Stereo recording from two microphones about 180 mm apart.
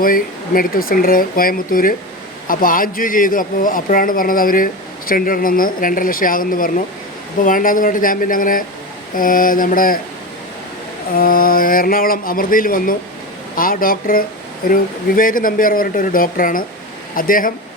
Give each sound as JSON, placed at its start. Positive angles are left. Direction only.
{"t": 0.0, "sound": "speech", "side_deg": 50}
{"t": 11.1, "sound": "speech", "side_deg": 55}